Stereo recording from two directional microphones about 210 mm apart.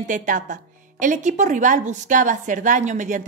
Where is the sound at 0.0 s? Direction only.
35° right (ahead or behind).